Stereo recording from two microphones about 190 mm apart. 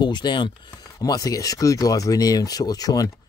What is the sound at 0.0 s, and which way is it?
Speech, 25° left (ahead or behind).